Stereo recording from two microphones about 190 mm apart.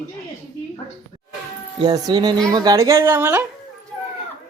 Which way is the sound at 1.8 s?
20° right (ahead or behind).